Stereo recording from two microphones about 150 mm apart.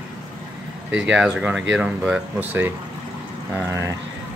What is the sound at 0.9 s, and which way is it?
Speech, 5° right (ahead or behind).